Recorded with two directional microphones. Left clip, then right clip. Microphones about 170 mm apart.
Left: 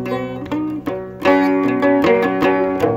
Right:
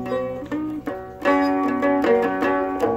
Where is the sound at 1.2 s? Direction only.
45° left (ahead or behind).